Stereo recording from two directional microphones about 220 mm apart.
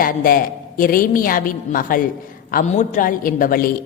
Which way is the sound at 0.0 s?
40° left (ahead or behind).